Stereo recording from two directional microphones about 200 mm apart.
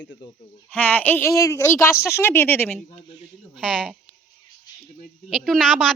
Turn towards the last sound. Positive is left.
turn(degrees=0)  # may be behind; listen again after turning